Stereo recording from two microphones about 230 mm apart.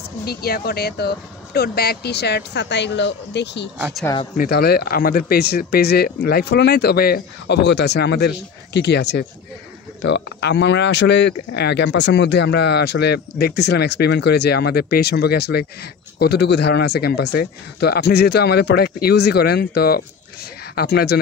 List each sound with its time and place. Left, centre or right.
0.2 s speech: left
3.7 s speech: centre
4.4 s speech: left